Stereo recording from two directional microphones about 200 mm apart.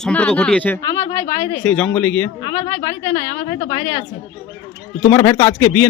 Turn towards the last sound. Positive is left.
turn(degrees=10)  # may be behind; listen again after turning